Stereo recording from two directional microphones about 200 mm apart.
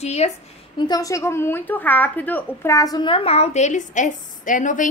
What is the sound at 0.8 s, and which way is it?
A woman's voice, 20° left (ahead or behind).